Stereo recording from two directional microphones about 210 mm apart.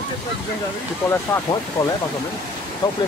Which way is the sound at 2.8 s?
25° left (ahead or behind).